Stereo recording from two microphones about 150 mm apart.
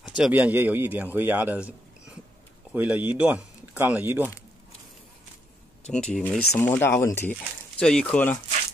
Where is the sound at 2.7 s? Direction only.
10° right (ahead or behind).